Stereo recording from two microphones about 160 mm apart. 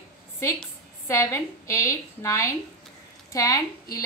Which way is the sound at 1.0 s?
15° left (ahead or behind).